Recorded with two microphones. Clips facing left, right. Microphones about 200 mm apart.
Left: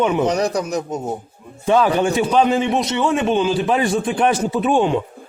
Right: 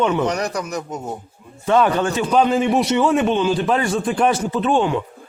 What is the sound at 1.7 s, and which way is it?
Speech, 10° left (ahead or behind).